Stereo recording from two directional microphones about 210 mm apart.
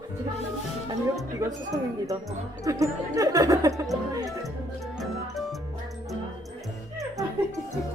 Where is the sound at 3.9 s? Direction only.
Centre (ahead or behind).